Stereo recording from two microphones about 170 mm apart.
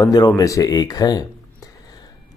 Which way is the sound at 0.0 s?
20° left (ahead or behind).